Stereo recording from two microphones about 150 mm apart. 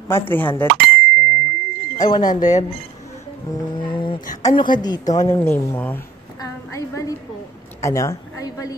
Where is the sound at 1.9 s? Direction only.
25° left (ahead or behind).